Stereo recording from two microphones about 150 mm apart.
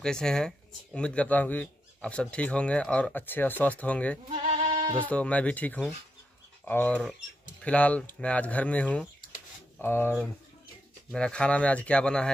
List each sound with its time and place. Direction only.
0.0 s speech: 5° left (ahead or behind)
4.3 s bleat: 50° right (ahead or behind)
4.9 s speech: 10° left (ahead or behind)